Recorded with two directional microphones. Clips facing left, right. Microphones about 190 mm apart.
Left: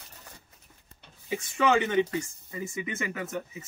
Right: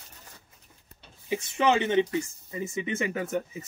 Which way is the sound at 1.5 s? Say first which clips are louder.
Right 1 dB; 25° right (ahead or behind).